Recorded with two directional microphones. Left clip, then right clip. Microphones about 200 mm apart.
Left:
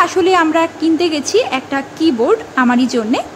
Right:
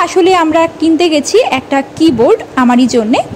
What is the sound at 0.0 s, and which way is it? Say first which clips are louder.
A man's voice: right 3 dB; 20° right (ahead or behind).